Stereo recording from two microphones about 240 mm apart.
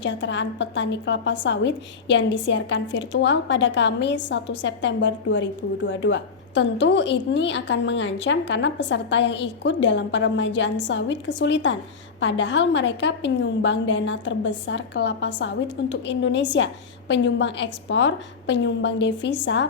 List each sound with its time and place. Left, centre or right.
0.0 s a woman's voice: left